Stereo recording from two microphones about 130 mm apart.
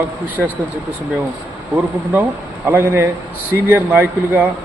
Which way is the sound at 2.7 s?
20° right (ahead or behind).